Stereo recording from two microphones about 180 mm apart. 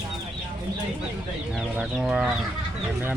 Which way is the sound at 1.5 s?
Centre (ahead or behind).